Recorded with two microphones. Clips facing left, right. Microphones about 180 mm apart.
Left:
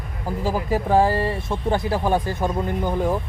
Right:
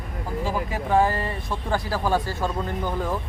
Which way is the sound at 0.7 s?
30° left (ahead or behind).